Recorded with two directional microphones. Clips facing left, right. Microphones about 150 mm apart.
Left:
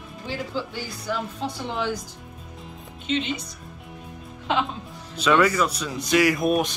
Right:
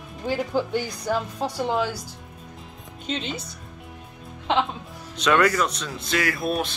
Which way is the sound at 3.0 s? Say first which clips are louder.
Left 4 dB; 35° right (ahead or behind).